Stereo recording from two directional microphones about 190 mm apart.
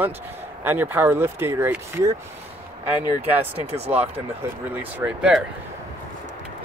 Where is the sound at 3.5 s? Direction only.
35° right (ahead or behind).